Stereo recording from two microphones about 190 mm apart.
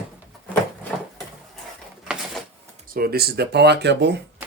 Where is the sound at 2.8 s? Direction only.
50° right (ahead or behind).